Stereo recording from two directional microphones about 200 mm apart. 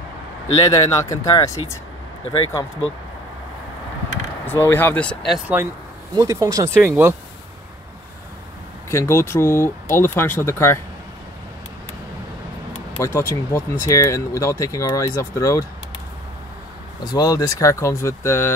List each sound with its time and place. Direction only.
0.6 s speech: 20° left (ahead or behind)
4.5 s speech: 10° left (ahead or behind)
6.1 s speech: 15° right (ahead or behind)
8.9 s speech: 15° left (ahead or behind)
13.0 s speech: 10° left (ahead or behind)
17.0 s speech: 20° left (ahead or behind)